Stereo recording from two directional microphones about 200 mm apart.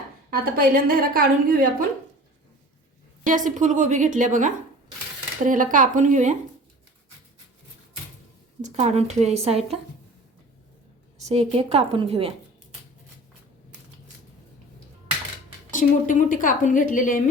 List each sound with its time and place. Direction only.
0.3 s a woman's voice: 45° right (ahead or behind)
3.2 s a woman's voice: 40° right (ahead or behind)
8.6 s a woman's voice: 35° right (ahead or behind)
11.2 s a woman's voice: 30° right (ahead or behind)
15.7 s a woman's voice: 40° left (ahead or behind)